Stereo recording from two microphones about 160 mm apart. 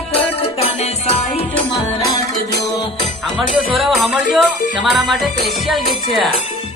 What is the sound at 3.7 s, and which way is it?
Music, centre (ahead or behind).